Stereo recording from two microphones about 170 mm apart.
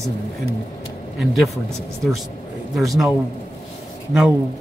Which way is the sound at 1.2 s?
Centre (ahead or behind).